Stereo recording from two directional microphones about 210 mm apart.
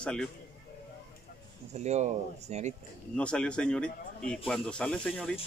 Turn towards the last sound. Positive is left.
turn(degrees=5)  # may be behind; listen again after turning